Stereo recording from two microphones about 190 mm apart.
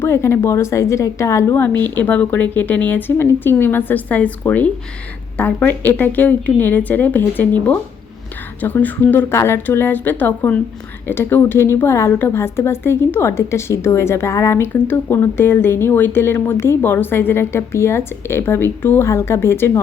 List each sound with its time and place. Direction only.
0.0 s a woman's voice: 15° left (ahead or behind)